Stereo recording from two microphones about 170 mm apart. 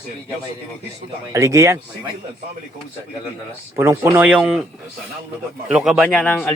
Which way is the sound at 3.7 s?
15° right (ahead or behind).